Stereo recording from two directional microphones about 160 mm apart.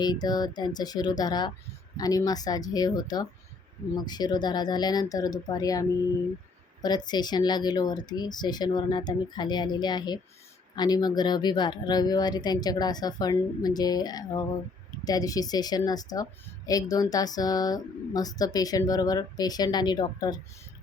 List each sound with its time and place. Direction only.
0.0 s speech: 25° left (ahead or behind)
6.8 s speech: 25° left (ahead or behind)